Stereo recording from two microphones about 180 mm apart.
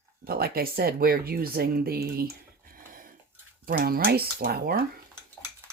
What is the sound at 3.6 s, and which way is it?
A woman's voice, 55° right (ahead or behind).